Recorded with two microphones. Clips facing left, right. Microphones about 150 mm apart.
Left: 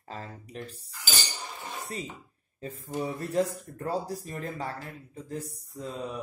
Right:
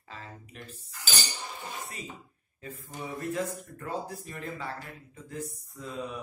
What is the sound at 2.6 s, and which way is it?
Speech, 35° left (ahead or behind).